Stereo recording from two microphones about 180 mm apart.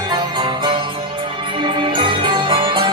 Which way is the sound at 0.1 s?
25° right (ahead or behind).